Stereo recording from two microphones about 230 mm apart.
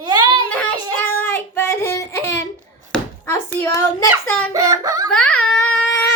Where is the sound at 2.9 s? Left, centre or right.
Centre.